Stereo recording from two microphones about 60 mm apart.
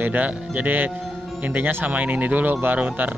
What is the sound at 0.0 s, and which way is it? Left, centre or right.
Speech, right.